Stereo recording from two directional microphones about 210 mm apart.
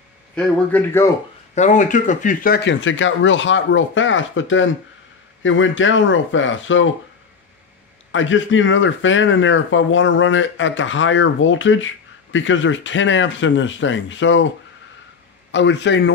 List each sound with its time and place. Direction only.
0.4 s a man's voice: 10° left (ahead or behind)
1.5 s speech: 35° left (ahead or behind); by 6.9 s 65° left (ahead or behind)
8.1 s speech: 65° left (ahead or behind)
15.5 s speech: 60° left (ahead or behind)